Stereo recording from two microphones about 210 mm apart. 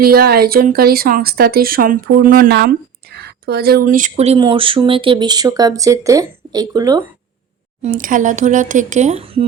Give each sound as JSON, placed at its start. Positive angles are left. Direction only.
{"t": 0.0, "sound": "speech", "side_deg": -45}
{"t": 7.8, "sound": "speech", "side_deg": -40}